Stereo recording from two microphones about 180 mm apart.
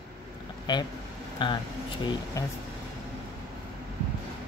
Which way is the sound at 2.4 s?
15° left (ahead or behind).